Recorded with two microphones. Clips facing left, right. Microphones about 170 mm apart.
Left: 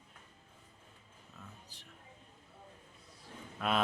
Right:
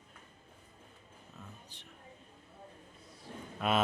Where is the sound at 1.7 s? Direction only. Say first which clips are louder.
Right 3 dB; centre (ahead or behind).